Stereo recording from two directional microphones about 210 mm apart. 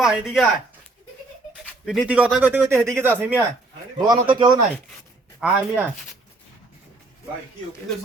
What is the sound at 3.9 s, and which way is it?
Speech, 20° right (ahead or behind).